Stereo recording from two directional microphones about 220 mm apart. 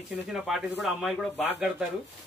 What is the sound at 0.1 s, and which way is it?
Speech, centre (ahead or behind).